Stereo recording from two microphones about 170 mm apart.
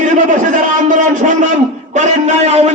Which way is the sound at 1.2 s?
45° right (ahead or behind).